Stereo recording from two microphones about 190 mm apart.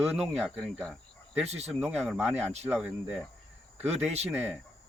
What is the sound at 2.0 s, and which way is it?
Speech, centre (ahead or behind).